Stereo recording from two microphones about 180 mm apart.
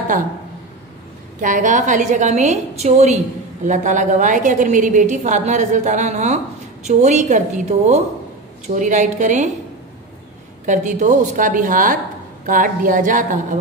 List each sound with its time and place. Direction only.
1.4 s a woman's voice: 45° right (ahead or behind)
10.6 s a woman's voice: 45° right (ahead or behind)